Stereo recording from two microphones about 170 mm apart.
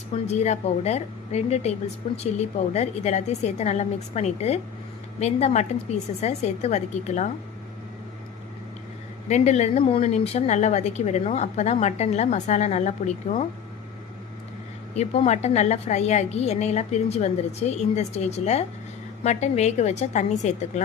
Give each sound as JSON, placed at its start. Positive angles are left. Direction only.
{"t": 0.3, "sound": "a woman's voice", "side_deg": 40}
{"t": 9.3, "sound": "a woman's voice", "side_deg": 40}
{"t": 14.9, "sound": "a woman's voice", "side_deg": 40}